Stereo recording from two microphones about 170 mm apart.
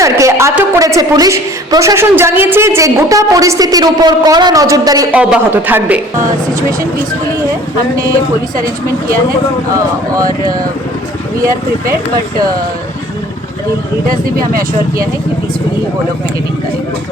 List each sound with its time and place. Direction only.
0.0 s a woman's voice: 20° right (ahead or behind)
5.1 s a man's voice: 10° right (ahead or behind)